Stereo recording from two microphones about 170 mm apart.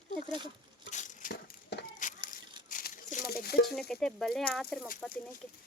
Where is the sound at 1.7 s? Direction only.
80° left.